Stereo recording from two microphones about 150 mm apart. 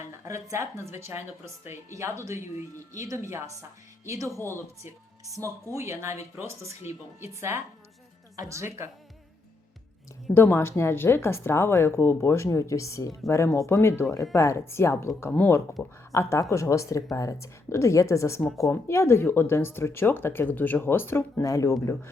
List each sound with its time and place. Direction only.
0.3 s a woman's voice: 20° right (ahead or behind)
4.4 s speech: 15° left (ahead or behind)
4.8 s a woman's voice: 20° right (ahead or behind)
10.3 s speech: 15° left (ahead or behind)